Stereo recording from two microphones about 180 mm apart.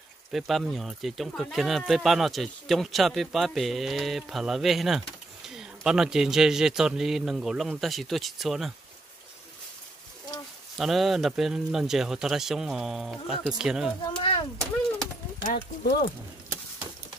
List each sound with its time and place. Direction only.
0.3 s speech: centre (ahead or behind)
10.8 s speech: centre (ahead or behind)
14.0 s a sound: 30° left (ahead or behind)
15.4 s speech: 60° left (ahead or behind)